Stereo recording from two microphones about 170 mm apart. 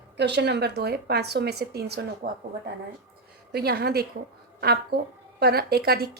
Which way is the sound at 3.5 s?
65° right (ahead or behind).